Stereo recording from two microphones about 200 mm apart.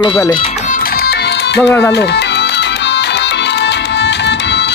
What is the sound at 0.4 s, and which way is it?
Music, 45° left (ahead or behind).